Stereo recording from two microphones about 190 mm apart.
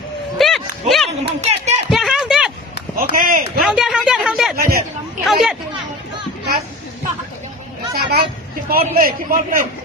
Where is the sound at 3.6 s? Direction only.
5° right (ahead or behind).